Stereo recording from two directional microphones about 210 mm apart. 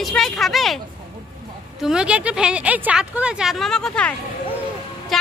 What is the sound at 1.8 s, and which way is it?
A woman's voice, 5° right (ahead or behind).